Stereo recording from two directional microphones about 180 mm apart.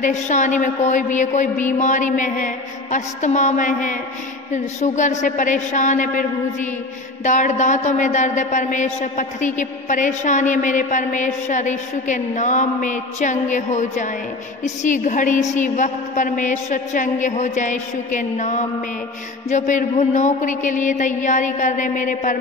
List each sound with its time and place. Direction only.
0.0 s a woman's voice: 45° left (ahead or behind)